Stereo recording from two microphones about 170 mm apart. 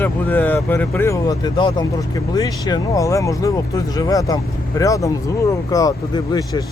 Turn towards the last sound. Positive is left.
turn(degrees=25)  # may be behind; listen again after turning